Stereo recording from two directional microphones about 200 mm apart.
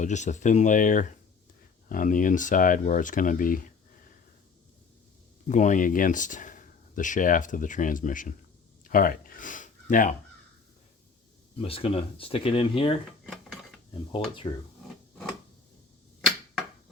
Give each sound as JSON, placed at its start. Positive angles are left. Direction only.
{"t": 0.0, "sound": "speech", "side_deg": 35}
{"t": 5.5, "sound": "speech", "side_deg": 40}
{"t": 8.8, "sound": "a sound", "side_deg": 45}
{"t": 11.5, "sound": "speech", "side_deg": 30}
{"t": 13.2, "sound": "dishes", "side_deg": 0}
{"t": 14.1, "sound": "speech", "side_deg": 25}